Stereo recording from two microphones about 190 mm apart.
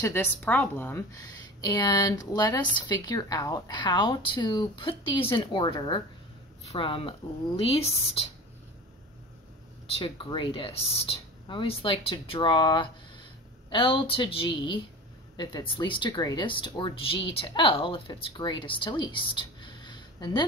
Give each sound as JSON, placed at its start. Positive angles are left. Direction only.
{"t": 0.0, "sound": "a woman's voice", "side_deg": 10}
{"t": 9.9, "sound": "a woman's voice", "side_deg": 30}